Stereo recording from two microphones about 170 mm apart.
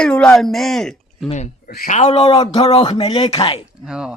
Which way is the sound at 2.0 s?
35° left (ahead or behind).